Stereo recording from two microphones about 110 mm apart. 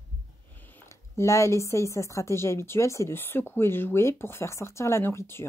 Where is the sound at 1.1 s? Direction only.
30° left (ahead or behind).